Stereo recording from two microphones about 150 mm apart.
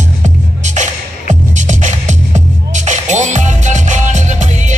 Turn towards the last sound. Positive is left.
turn(degrees=-55)  # may be behind; listen again after turning